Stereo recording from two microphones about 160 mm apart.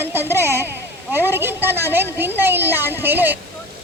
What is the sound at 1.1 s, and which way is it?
A woman's voice, 15° right (ahead or behind).